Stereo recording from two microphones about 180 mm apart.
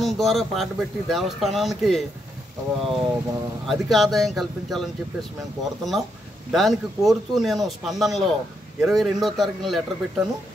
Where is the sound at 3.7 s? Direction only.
Centre (ahead or behind).